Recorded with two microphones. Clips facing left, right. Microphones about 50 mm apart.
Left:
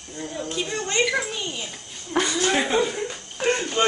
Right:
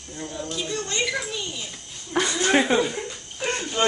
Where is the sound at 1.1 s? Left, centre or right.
Left.